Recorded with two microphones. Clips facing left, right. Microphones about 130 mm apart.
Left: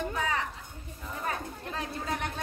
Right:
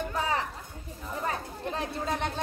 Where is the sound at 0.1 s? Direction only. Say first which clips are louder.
Right 2 dB; 35° right (ahead or behind).